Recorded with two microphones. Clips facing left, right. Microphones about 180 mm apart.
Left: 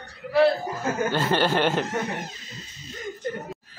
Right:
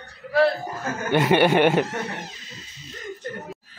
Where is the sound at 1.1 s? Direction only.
15° right (ahead or behind).